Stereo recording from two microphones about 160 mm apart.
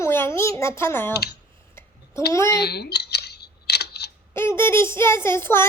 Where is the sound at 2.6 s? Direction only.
90° left.